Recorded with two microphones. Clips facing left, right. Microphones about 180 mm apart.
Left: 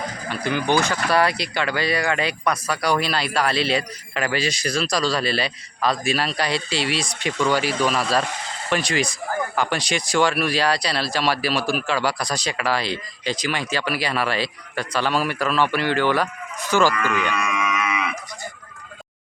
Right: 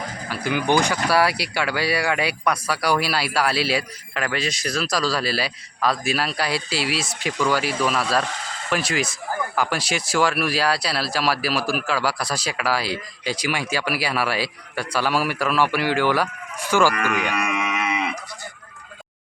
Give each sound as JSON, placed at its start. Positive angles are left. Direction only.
{"t": 0.3, "sound": "speech", "side_deg": -10}
{"t": 16.9, "sound": "speech", "side_deg": -65}
{"t": 17.8, "sound": "cattle", "side_deg": -30}